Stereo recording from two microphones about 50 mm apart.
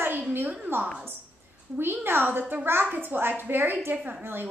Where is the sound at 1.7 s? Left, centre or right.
Right.